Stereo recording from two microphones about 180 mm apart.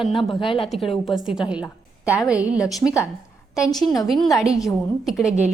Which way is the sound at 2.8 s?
80° right.